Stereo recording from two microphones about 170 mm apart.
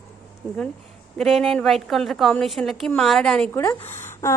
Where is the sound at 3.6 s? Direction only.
15° left (ahead or behind).